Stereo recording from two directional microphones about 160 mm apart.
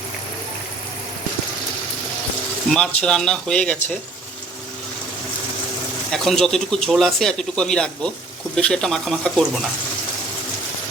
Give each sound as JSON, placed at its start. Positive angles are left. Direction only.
{"t": 2.6, "sound": "speech", "side_deg": 5}
{"t": 6.1, "sound": "speech", "side_deg": 0}